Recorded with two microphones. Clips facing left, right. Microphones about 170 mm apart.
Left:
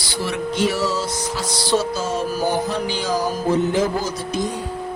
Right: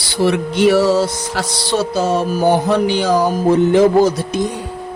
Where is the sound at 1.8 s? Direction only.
65° right (ahead or behind).